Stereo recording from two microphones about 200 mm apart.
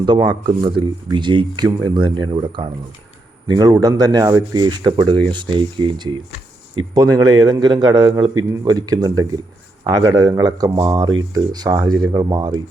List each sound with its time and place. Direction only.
0.0 s speech: 20° right (ahead or behind)